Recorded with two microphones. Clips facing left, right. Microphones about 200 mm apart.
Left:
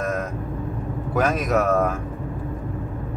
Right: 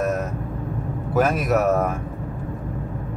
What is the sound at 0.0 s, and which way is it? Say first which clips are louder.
Vehicle: right 2 dB; 5° right (ahead or behind).